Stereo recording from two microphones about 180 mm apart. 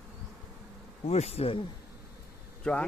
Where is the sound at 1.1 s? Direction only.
35° left (ahead or behind).